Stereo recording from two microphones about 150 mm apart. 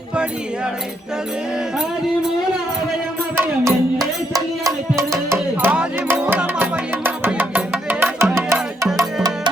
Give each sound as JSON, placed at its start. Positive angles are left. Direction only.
{"t": 3.3, "sound": "music", "side_deg": -15}
{"t": 5.3, "sound": "music", "side_deg": -10}